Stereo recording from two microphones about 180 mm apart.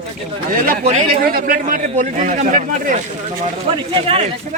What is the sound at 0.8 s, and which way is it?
Speech, 30° right (ahead or behind).